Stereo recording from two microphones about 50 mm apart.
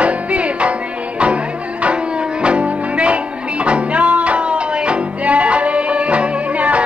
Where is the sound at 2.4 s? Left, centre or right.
Right.